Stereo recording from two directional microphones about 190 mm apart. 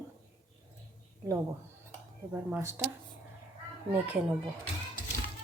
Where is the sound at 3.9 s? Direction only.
10° right (ahead or behind).